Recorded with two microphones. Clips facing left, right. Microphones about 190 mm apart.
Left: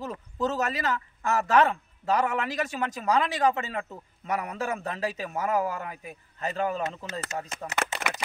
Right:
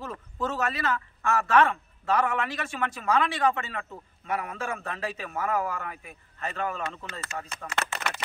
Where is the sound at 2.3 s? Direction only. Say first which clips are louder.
Left 2 dB; 40° left (ahead or behind).